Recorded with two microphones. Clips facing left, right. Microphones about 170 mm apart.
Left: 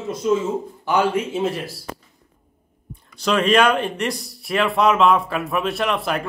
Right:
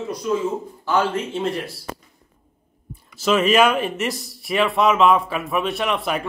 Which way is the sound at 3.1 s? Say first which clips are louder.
Even; 5° right (ahead or behind).